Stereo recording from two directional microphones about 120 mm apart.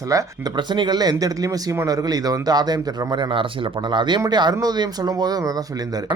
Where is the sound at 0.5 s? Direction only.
40° right (ahead or behind).